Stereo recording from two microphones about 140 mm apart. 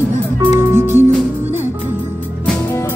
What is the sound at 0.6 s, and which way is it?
Music, 15° right (ahead or behind).